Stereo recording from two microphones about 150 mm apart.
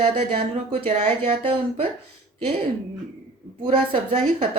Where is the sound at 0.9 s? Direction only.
40° right (ahead or behind).